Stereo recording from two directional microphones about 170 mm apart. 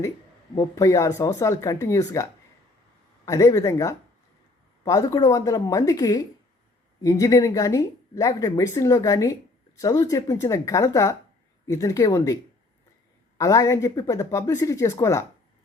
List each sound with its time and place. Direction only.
0.5 s speech: 20° left (ahead or behind)
3.2 s speech: 20° left (ahead or behind)
13.4 s speech: 20° left (ahead or behind)